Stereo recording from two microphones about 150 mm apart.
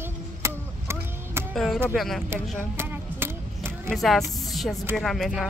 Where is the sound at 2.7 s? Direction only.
15° right (ahead or behind).